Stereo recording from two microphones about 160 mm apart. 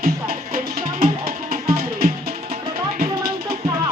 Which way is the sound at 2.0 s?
65° right (ahead or behind).